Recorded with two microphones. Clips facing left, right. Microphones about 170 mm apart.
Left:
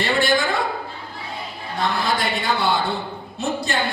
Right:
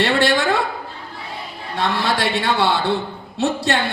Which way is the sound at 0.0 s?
65° right (ahead or behind).